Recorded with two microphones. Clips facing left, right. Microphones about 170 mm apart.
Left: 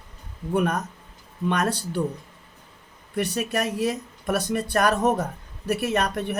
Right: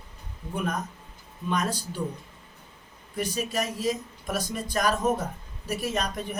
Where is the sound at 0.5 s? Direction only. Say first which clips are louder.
Left 7 dB; 65° left (ahead or behind).